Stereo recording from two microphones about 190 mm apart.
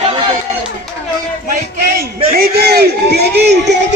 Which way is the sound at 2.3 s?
55° right (ahead or behind).